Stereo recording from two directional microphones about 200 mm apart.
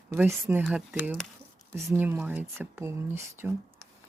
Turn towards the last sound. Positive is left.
turn(degrees=-15)  # may be behind; listen again after turning